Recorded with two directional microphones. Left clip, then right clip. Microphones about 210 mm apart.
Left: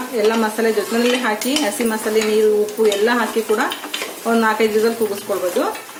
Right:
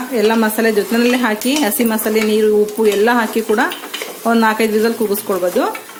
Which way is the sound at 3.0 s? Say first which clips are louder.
Right 2 dB; 50° right (ahead or behind).